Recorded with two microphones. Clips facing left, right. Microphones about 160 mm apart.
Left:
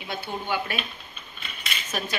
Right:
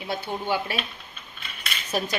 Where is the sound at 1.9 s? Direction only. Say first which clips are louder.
Right 5 dB; 35° right (ahead or behind).